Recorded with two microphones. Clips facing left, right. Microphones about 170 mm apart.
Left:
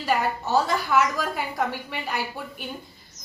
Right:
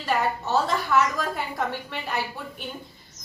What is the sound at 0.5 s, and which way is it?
A woman's voice, 5° left (ahead or behind).